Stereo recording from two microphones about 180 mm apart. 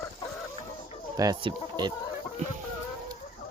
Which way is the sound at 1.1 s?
20° right (ahead or behind).